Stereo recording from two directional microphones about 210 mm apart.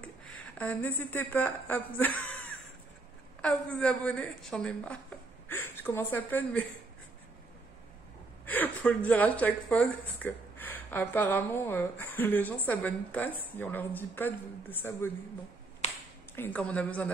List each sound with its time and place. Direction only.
0.6 s a woman's voice: 10° left (ahead or behind)
3.3 s a woman's voice: 5° left (ahead or behind)
8.5 s a woman's voice: 10° left (ahead or behind)
15.8 s a sound: 30° left (ahead or behind)
16.3 s a woman's voice: 10° left (ahead or behind)